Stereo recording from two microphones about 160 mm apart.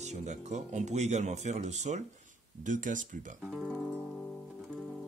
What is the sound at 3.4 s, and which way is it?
Music, 5° right (ahead or behind).